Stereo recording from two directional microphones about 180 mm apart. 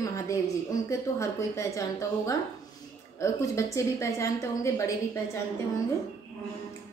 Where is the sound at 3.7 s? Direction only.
15° left (ahead or behind).